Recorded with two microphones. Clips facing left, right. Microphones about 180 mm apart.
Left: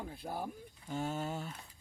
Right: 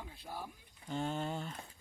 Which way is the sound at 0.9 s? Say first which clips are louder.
Even; 5° left (ahead or behind).